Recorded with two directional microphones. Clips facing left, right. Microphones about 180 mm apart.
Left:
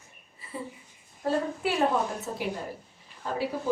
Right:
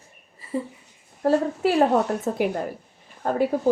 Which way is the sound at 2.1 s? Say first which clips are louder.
Right 9 dB; 55° right (ahead or behind).